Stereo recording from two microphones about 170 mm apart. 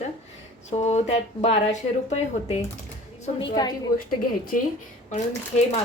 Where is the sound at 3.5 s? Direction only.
25° left (ahead or behind).